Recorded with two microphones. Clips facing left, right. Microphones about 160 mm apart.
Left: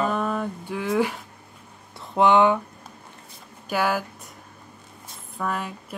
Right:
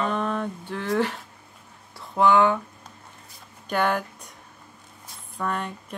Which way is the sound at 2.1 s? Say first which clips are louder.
Left 1 dB; 20° left (ahead or behind).